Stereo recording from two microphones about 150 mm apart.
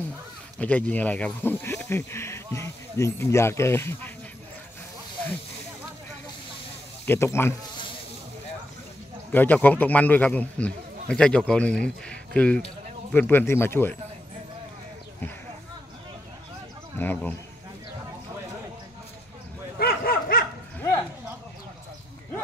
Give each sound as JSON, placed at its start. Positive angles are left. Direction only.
{"t": 0.6, "sound": "speech", "side_deg": 10}
{"t": 7.1, "sound": "speech", "side_deg": 15}
{"t": 9.3, "sound": "speech", "side_deg": 10}
{"t": 17.0, "sound": "speech", "side_deg": 10}
{"t": 19.8, "sound": "dog", "side_deg": 75}